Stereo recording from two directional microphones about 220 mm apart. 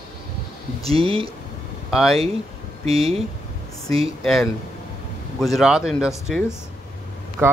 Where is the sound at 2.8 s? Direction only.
25° right (ahead or behind).